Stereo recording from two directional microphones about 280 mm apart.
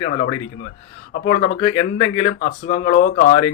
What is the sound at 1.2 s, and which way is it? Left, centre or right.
Speech, centre.